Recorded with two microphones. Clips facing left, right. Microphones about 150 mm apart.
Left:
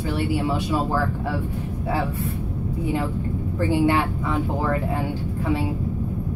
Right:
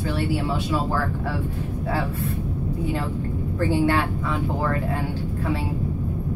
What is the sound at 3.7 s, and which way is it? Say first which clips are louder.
Speech: left 2 dB; 15° left (ahead or behind).